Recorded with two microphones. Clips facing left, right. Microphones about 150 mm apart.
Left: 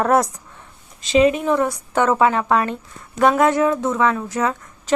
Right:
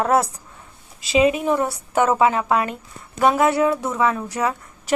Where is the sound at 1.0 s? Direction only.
10° right (ahead or behind).